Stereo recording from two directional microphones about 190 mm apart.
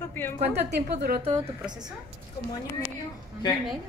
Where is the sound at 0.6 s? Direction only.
65° right (ahead or behind).